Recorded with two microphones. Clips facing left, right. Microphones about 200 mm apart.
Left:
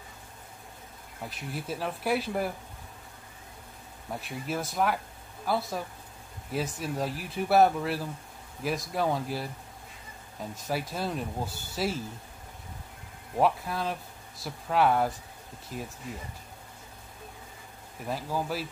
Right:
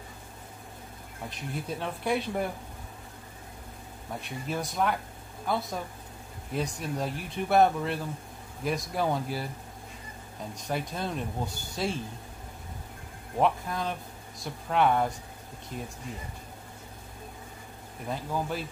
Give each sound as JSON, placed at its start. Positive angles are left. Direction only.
{"t": 1.5, "sound": "speech", "side_deg": 5}
{"t": 4.2, "sound": "speech", "side_deg": 5}
{"t": 10.5, "sound": "speech", "side_deg": 5}
{"t": 13.4, "sound": "speech", "side_deg": 5}
{"t": 18.0, "sound": "speech", "side_deg": 5}